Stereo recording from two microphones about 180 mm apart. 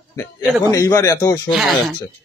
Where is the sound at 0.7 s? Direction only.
20° left (ahead or behind).